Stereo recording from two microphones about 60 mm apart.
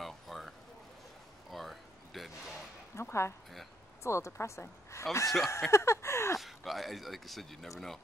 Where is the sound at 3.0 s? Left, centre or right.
Left.